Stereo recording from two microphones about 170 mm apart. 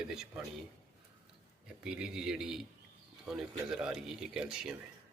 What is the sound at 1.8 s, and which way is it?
Speech, 5° right (ahead or behind).